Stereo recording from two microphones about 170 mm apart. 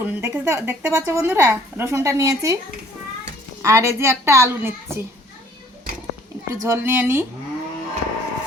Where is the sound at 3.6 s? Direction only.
15° right (ahead or behind).